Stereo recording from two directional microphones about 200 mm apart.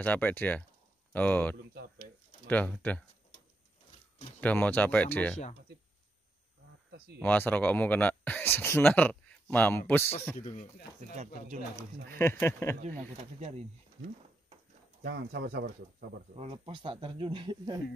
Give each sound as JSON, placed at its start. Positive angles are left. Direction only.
{"t": 0.0, "sound": "speech", "side_deg": 10}
{"t": 4.4, "sound": "speech", "side_deg": 10}
{"t": 7.2, "sound": "speech", "side_deg": 10}
{"t": 10.5, "sound": "speech", "side_deg": 45}
{"t": 11.1, "sound": "speech", "side_deg": -35}
{"t": 12.2, "sound": "speech", "side_deg": 15}
{"t": 12.7, "sound": "speech", "side_deg": -40}
{"t": 15.0, "sound": "speech", "side_deg": -50}
{"t": 16.3, "sound": "speech", "side_deg": -30}